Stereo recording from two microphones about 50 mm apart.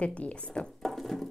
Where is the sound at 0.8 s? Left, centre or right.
Centre.